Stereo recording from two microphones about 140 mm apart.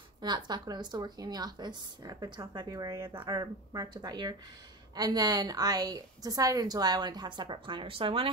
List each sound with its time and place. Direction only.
0.2 s speech: 30° right (ahead or behind)